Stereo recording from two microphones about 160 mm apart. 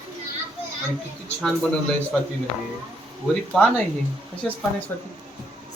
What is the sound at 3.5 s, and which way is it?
Speech, 10° left (ahead or behind).